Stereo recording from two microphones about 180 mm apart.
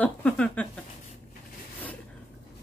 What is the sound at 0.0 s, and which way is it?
Speech, 5° left (ahead or behind).